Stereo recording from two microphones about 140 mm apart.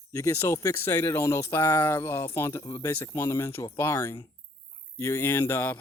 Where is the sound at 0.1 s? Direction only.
20° left (ahead or behind).